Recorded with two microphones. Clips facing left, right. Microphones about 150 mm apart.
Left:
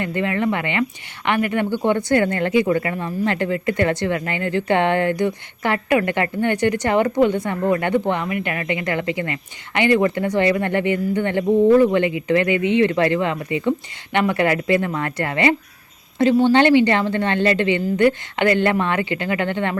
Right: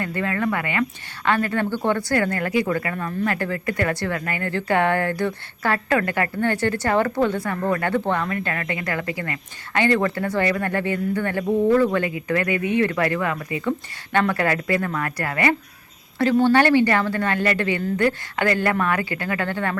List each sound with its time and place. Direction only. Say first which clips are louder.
0.0 s speech: left 3 dB; 20° left (ahead or behind)